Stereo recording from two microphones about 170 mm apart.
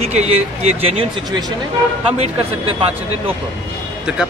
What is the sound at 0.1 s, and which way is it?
Speech, 40° right (ahead or behind).